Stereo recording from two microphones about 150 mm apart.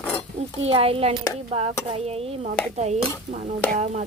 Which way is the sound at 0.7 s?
40° right (ahead or behind).